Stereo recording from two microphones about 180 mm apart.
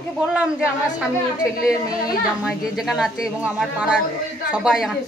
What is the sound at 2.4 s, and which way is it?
A woman's voice, centre (ahead or behind).